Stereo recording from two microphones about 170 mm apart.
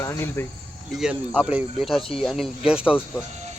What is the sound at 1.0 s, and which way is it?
Speech, 5° right (ahead or behind).